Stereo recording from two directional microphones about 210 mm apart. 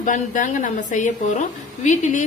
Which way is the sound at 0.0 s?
35° left (ahead or behind).